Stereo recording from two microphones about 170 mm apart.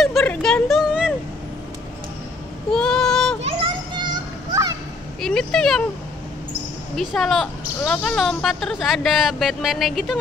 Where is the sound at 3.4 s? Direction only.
30° right (ahead or behind).